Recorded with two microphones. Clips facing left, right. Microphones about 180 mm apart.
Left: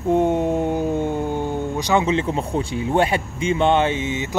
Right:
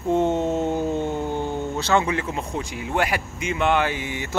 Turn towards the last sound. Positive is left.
turn(degrees=25)  # may be behind; listen again after turning